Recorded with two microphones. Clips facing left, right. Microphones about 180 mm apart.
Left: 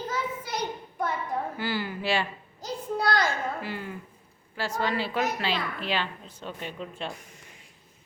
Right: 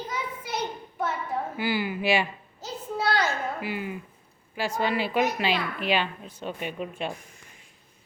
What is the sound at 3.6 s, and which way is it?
A woman's voice, 15° right (ahead or behind).